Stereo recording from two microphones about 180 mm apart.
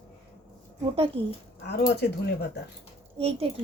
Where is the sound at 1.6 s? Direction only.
60° left (ahead or behind).